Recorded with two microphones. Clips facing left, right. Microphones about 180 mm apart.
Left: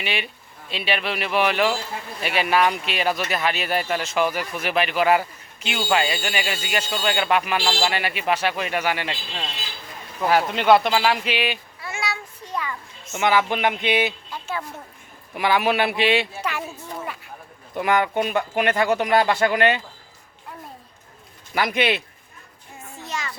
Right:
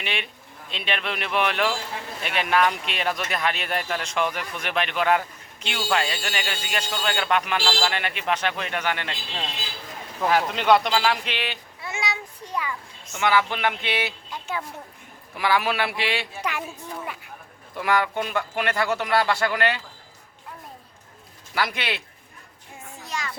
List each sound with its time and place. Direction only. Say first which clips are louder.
0.0 s speech: left 3 dB; 5° left (ahead or behind)
10.2 s speech: left 2 dB; 5° left (ahead or behind)
11.8 s a sound: left 1 dB; 20° right (ahead or behind)
13.1 s speech: left 2 dB; 20° left (ahead or behind)
15.4 s speech: left 3 dB; 20° left (ahead or behind)
16.4 s a woman's voice: left 1 dB; 15° right (ahead or behind)
17.7 s speech: left 3 dB; 20° left (ahead or behind)
21.5 s speech: left 6 dB; 20° left (ahead or behind)
23.0 s music: left 1 dB; centre (ahead or behind)